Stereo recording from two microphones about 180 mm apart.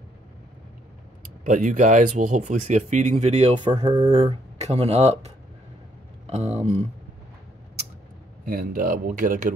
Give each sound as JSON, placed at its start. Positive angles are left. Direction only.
{"t": 1.2, "sound": "speech", "side_deg": -45}
{"t": 3.9, "sound": "speech", "side_deg": -20}
{"t": 4.2, "sound": "speech", "side_deg": -35}
{"t": 8.5, "sound": "speech", "side_deg": -50}